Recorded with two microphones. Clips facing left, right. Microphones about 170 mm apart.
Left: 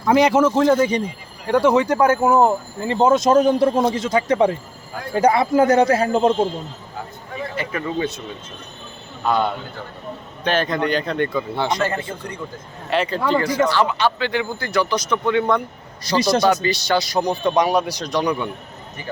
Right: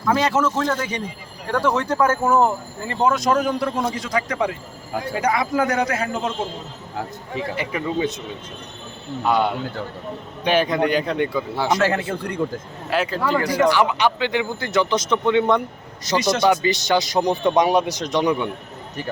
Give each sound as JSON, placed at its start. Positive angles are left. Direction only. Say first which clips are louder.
{"t": 0.0, "sound": "a man's voice", "louder": "left 5 dB", "side_deg": 15}
{"t": 7.5, "sound": "a man's voice", "louder": "even", "side_deg": -15}
{"t": 9.2, "sound": "a man's voice", "louder": "even", "side_deg": -10}
{"t": 11.8, "sound": "a man's voice", "louder": "right 3 dB", "side_deg": -70}
{"t": 12.9, "sound": "a man's voice", "louder": "left 2 dB", "side_deg": 0}